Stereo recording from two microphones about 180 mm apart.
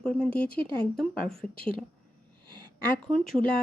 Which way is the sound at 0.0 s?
5° left (ahead or behind).